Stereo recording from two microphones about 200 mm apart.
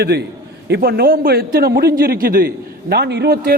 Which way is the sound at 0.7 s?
50° right (ahead or behind).